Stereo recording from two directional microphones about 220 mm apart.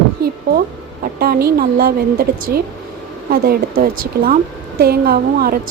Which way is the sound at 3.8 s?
40° right (ahead or behind).